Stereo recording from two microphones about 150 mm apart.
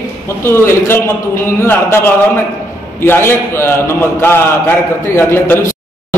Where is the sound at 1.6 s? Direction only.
15° left (ahead or behind).